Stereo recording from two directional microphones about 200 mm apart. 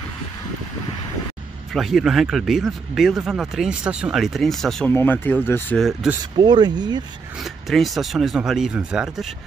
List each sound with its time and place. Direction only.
1.7 s speech: centre (ahead or behind)
6.3 s speech: 20° right (ahead or behind)
7.3 s speech: centre (ahead or behind)